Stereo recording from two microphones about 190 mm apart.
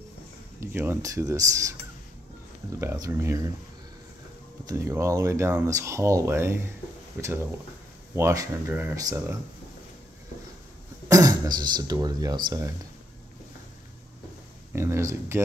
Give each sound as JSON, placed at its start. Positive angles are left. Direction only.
{"t": 0.6, "sound": "speech", "side_deg": -15}
{"t": 2.8, "sound": "speech", "side_deg": -15}
{"t": 4.6, "sound": "speech", "side_deg": -15}
{"t": 11.1, "sound": "speech", "side_deg": -20}
{"t": 14.7, "sound": "speech", "side_deg": -15}